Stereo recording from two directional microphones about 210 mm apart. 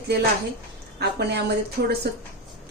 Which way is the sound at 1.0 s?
50° right (ahead or behind).